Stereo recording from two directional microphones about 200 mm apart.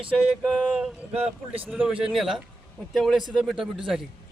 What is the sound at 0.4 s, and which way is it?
Speech, centre (ahead or behind).